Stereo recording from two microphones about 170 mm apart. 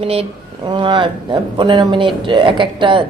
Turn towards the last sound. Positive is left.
turn(degrees=-30)  # may be behind; listen again after turning